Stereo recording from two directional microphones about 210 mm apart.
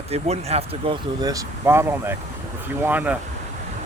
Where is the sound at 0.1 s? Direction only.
30° right (ahead or behind).